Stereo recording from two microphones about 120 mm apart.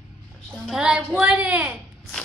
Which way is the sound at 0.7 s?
5° right (ahead or behind).